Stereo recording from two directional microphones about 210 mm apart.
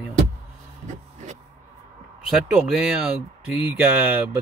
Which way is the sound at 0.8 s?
35° right (ahead or behind).